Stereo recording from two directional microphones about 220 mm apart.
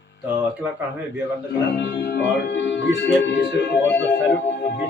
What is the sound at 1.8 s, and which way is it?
Speech, 50° left (ahead or behind).